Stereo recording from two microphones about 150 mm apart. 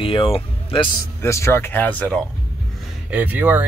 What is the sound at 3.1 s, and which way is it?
Speech, 10° right (ahead or behind).